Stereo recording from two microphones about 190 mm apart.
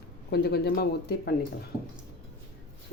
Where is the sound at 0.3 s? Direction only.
55° left (ahead or behind).